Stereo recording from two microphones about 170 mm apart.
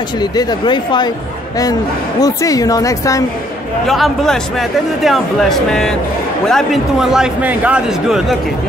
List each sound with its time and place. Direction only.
0.2 s a woman's voice: 25° left (ahead or behind)
3.8 s speech: centre (ahead or behind)